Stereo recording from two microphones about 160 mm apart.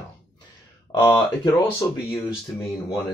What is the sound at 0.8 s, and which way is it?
Speech, 25° left (ahead or behind).